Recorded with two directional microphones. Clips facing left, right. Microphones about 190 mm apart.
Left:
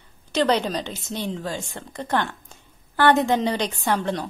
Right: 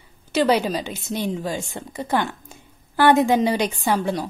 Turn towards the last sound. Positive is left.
turn(degrees=-10)  # may be behind; listen again after turning